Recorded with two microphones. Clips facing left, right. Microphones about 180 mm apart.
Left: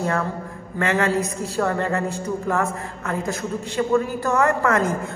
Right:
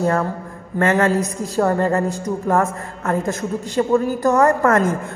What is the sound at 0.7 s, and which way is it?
A woman's voice, 45° right (ahead or behind).